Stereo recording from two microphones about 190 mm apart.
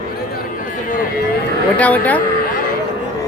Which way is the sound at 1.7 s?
5° left (ahead or behind).